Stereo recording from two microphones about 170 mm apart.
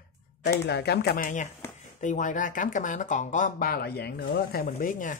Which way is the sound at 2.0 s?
50° left (ahead or behind).